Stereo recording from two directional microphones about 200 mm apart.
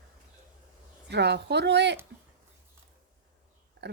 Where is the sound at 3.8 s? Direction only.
55° right (ahead or behind).